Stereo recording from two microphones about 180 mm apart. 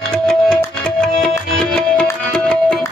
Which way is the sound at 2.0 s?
5° left (ahead or behind).